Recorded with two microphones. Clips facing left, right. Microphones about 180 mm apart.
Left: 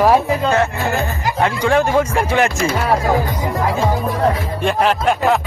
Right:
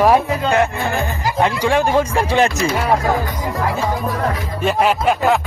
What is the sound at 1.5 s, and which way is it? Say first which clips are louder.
Speech: left 3 dB; 15° right (ahead or behind).